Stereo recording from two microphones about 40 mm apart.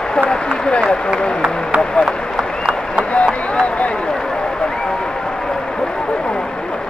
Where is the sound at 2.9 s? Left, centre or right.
Left.